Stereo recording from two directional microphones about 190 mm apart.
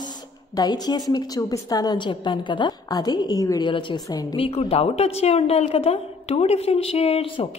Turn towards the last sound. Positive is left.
turn(degrees=30)  # may be behind; listen again after turning